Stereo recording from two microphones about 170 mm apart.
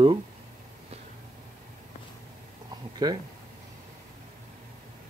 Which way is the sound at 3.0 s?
25° right (ahead or behind).